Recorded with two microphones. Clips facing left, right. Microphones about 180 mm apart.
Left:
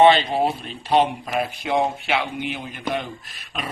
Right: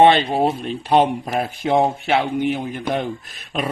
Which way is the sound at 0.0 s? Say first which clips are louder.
Right 2 dB; 50° right (ahead or behind).